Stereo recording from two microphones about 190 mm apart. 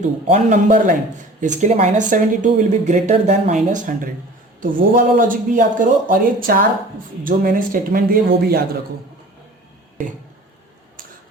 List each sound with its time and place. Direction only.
0.0 s speech: 40° right (ahead or behind)